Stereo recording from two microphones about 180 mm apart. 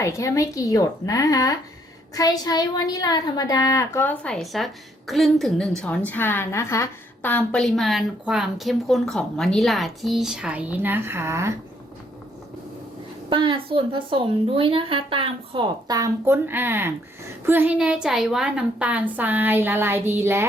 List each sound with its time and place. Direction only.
0.0 s a woman's voice: 15° left (ahead or behind); by 11.5 s 15° right (ahead or behind)
13.3 s speech: 25° right (ahead or behind)